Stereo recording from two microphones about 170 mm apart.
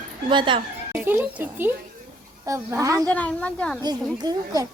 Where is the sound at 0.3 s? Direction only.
30° right (ahead or behind).